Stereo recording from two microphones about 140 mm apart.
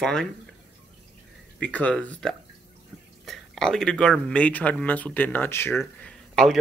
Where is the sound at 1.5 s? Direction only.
10° left (ahead or behind).